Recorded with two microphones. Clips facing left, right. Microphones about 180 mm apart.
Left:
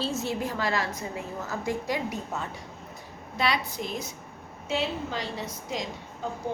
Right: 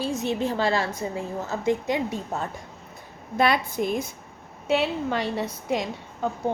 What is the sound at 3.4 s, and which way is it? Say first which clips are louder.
A woman's voice: right 6 dB; 50° right (ahead or behind).